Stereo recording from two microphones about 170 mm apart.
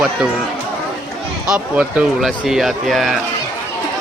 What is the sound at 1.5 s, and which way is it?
Speech, 5° right (ahead or behind).